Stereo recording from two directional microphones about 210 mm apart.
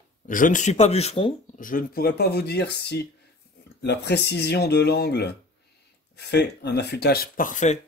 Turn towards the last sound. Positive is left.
turn(degrees=35)  # may be behind; listen again after turning